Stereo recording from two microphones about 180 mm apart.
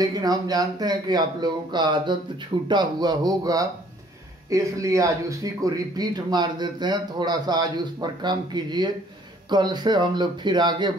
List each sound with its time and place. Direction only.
0.0 s speech: 20° right (ahead or behind)